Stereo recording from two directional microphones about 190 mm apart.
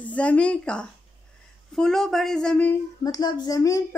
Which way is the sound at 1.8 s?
Centre (ahead or behind).